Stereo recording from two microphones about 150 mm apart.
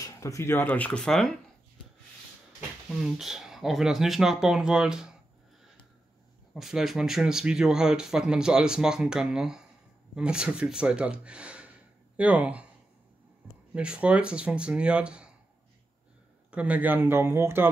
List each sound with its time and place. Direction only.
0.0 s speech: 20° left (ahead or behind); by 1.3 s 5° left (ahead or behind)
2.9 s speech: centre (ahead or behind)
6.5 s speech: centre (ahead or behind)
13.7 s speech: 5° right (ahead or behind)
16.4 s speech: 10° right (ahead or behind)